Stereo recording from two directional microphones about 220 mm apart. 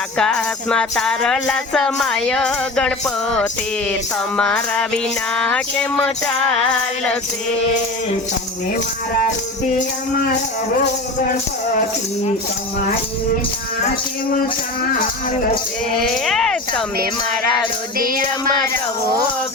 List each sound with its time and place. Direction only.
0.2 s music: 5° left (ahead or behind)
4.4 s music: 5° left (ahead or behind)
16.0 s music: centre (ahead or behind)
17.9 s child singing: 40° right (ahead or behind)